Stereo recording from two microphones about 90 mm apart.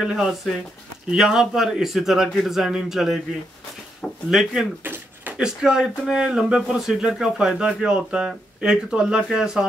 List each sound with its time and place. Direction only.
0.0 s a man's voice: 10° right (ahead or behind)
4.8 s a sound: 20° right (ahead or behind)
5.4 s speech: 10° right (ahead or behind)